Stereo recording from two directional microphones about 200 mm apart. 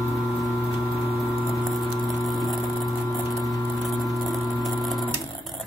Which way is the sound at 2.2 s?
Centre (ahead or behind).